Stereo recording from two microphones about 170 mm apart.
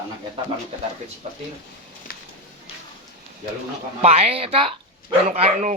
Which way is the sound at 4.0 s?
35° right (ahead or behind).